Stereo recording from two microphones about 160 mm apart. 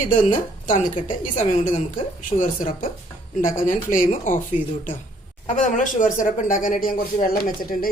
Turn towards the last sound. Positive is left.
turn(degrees=65)  # may be behind; listen again after turning